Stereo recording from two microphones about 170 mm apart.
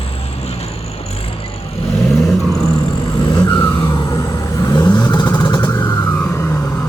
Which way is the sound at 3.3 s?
25° left (ahead or behind).